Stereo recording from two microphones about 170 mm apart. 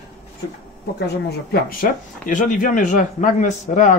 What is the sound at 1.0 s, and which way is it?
Speech, 65° left (ahead or behind).